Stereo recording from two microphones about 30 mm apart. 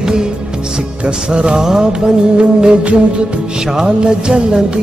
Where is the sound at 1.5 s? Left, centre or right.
Right.